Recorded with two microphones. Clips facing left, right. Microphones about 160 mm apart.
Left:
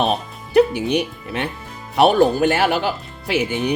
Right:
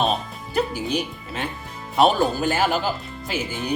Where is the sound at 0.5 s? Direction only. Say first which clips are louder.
Left 8 dB; 65° left (ahead or behind).